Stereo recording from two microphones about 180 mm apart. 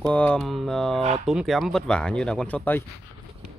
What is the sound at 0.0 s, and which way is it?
Speech, 5° left (ahead or behind).